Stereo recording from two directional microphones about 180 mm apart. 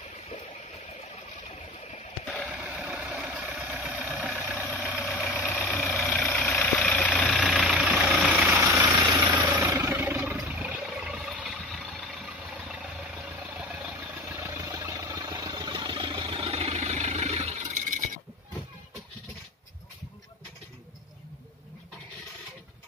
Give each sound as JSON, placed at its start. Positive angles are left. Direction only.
{"t": 2.4, "sound": "vehicle", "side_deg": -5}
{"t": 7.4, "sound": "vehicle", "side_deg": -5}
{"t": 13.6, "sound": "engine", "side_deg": -5}